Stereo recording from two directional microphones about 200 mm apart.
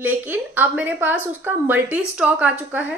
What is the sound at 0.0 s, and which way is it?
A woman's voice, 10° right (ahead or behind).